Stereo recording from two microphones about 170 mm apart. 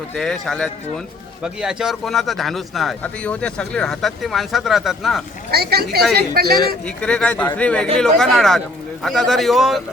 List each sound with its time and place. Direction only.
0.1 s a man's voice: centre (ahead or behind)
5.5 s speech: 65° right (ahead or behind)
6.8 s a man's voice: 5° left (ahead or behind)